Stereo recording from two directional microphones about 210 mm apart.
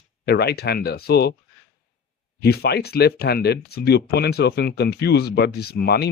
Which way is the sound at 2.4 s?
50° left (ahead or behind).